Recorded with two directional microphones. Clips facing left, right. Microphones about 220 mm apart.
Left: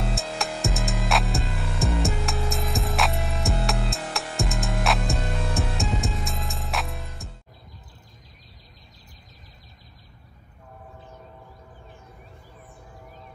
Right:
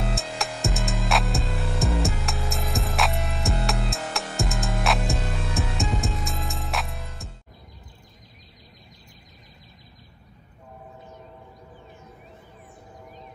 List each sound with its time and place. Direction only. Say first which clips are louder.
0.1 s music: left 1 dB; centre (ahead or behind)